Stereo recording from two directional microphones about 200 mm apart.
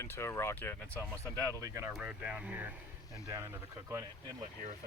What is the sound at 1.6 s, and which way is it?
Speech, 15° right (ahead or behind).